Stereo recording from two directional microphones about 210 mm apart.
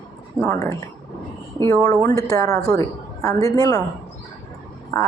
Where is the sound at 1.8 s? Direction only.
15° left (ahead or behind).